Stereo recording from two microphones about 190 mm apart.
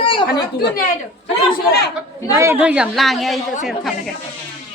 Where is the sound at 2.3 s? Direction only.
15° right (ahead or behind).